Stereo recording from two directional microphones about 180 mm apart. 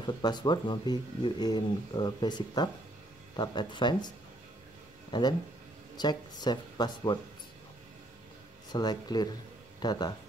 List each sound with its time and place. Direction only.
0.0 s speech: 25° left (ahead or behind)
5.1 s speech: 20° left (ahead or behind)
8.7 s speech: 25° left (ahead or behind)